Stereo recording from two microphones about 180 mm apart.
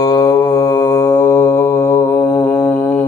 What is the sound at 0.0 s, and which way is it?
Mantra, 20° left (ahead or behind).